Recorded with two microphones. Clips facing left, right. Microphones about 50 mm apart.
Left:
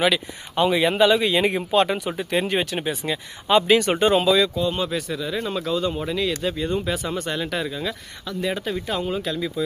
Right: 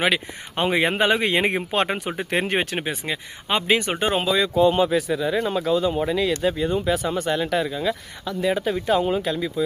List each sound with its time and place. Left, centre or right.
0.0 s speech: right
3.1 s speech: right
4.9 s speech: centre
5.2 s speech: centre
5.5 s speech: centre